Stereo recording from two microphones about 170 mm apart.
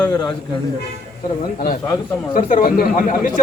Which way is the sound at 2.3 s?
55° left (ahead or behind).